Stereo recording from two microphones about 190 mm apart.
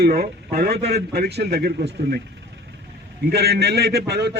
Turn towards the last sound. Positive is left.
turn(degrees=-60)  # may be behind; listen again after turning